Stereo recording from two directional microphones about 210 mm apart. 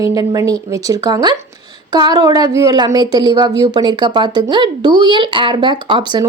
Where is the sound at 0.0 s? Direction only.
15° right (ahead or behind).